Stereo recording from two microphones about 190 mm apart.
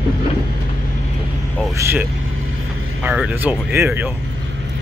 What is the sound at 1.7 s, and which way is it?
Speech, 15° right (ahead or behind).